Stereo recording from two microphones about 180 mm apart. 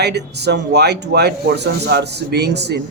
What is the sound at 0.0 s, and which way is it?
Speech, 70° right (ahead or behind).